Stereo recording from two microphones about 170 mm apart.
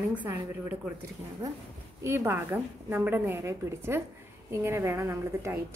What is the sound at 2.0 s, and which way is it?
A woman's voice, 15° right (ahead or behind).